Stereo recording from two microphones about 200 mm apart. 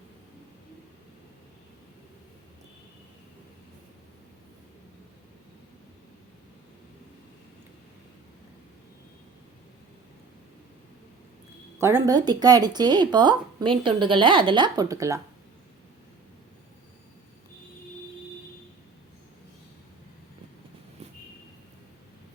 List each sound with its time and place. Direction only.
11.8 s speech: 10° right (ahead or behind)